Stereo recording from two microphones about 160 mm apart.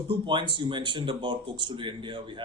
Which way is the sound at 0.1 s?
30° right (ahead or behind).